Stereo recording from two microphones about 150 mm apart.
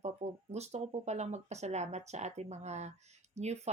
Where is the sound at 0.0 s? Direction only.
45° right (ahead or behind).